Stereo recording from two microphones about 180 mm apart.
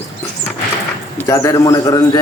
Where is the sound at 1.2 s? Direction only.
15° left (ahead or behind).